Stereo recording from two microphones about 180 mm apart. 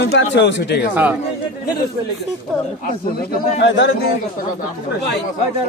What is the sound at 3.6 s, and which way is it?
Speech, 80° left.